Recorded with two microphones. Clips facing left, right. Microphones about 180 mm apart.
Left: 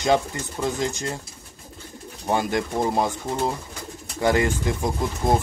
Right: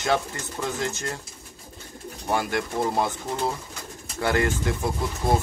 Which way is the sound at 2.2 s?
20° left (ahead or behind).